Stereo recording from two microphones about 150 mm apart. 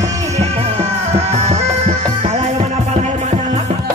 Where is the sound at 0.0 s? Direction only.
45° right (ahead or behind).